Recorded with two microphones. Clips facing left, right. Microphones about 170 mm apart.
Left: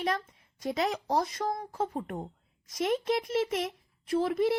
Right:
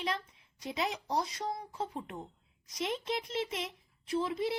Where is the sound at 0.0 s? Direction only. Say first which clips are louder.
Left 5 dB; 50° left (ahead or behind).